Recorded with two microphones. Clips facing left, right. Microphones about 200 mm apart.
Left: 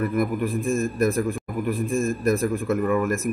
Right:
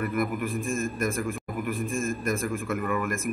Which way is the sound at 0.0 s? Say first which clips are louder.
Left 4 dB; 35° left (ahead or behind).